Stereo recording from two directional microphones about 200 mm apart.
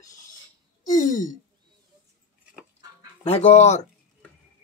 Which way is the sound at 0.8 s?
40° left (ahead or behind).